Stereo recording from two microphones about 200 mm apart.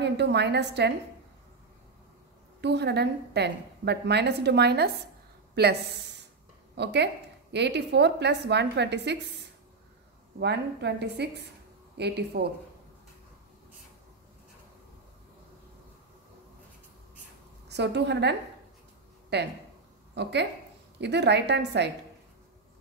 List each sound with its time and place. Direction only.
0.0 s a woman's voice: 60° right (ahead or behind)
2.6 s a woman's voice: 55° right (ahead or behind)
17.6 s a woman's voice: 55° right (ahead or behind)
19.3 s a woman's voice: 55° right (ahead or behind)